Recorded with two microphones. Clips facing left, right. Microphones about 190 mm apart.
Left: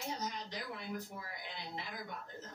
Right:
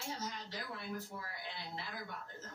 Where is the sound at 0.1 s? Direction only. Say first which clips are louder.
Left 2 dB; 15° left (ahead or behind).